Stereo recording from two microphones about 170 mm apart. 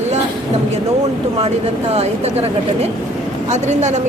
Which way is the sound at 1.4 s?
40° right (ahead or behind).